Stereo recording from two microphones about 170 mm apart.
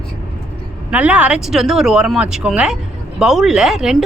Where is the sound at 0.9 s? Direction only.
10° right (ahead or behind).